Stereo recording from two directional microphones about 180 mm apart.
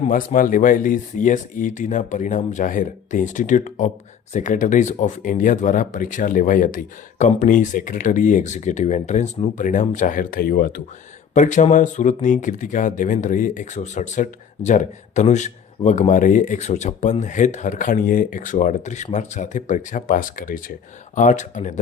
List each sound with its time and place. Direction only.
0.1 s speech: 50° left (ahead or behind)
11.3 s speech: 45° left (ahead or behind)